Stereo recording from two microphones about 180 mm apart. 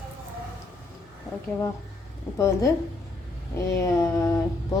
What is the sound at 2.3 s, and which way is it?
A woman's voice, 15° left (ahead or behind).